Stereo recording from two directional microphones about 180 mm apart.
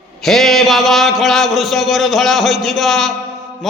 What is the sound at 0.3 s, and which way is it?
A man's voice, centre (ahead or behind).